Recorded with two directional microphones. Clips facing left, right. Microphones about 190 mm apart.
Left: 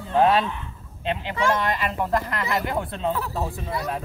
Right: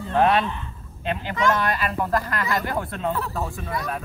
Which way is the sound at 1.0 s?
25° left (ahead or behind).